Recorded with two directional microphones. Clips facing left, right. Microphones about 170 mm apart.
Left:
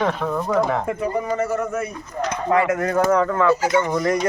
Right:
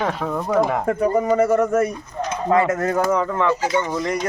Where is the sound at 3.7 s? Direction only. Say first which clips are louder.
Left 2 dB; 15° left (ahead or behind).